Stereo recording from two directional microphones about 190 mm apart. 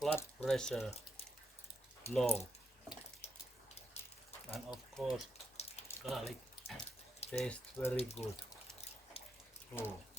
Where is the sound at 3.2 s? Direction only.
35° left (ahead or behind).